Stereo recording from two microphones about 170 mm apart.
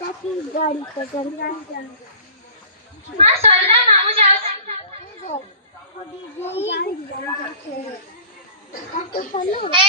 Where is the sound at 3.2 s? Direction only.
35° right (ahead or behind).